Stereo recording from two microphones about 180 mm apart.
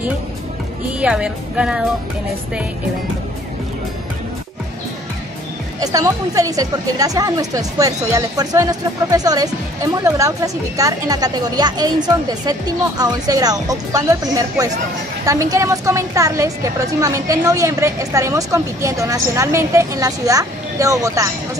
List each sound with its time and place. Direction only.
1.0 s speech: 5° right (ahead or behind)
5.8 s a woman's voice: 20° right (ahead or behind)